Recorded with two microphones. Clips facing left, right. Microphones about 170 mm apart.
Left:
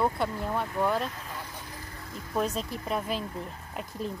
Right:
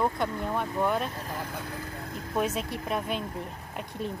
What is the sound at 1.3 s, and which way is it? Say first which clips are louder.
Vehicle: right 5 dB; 55° right (ahead or behind).